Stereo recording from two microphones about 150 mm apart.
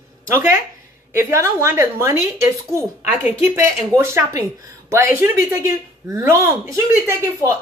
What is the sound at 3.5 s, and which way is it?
Speech, 15° right (ahead or behind).